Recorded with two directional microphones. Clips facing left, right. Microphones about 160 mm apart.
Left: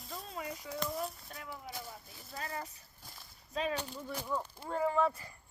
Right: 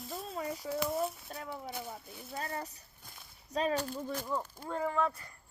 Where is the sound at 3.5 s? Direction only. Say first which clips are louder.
Right 4 dB; 40° right (ahead or behind).